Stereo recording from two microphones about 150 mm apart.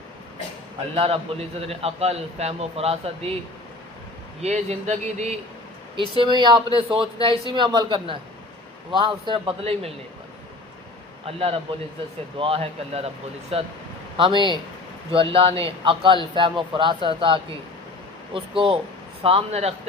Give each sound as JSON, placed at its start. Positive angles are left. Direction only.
{"t": 0.9, "sound": "a man's voice", "side_deg": -40}
{"t": 4.4, "sound": "speech", "side_deg": -50}
{"t": 6.0, "sound": "a man's voice", "side_deg": -35}
{"t": 11.3, "sound": "a man's voice", "side_deg": -40}